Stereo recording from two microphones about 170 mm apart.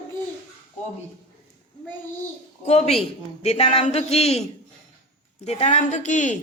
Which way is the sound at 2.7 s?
40° left (ahead or behind).